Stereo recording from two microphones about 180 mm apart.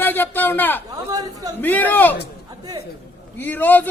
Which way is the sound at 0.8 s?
20° right (ahead or behind).